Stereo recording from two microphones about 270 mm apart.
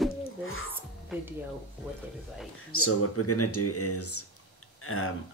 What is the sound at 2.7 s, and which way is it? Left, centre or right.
Speech, left.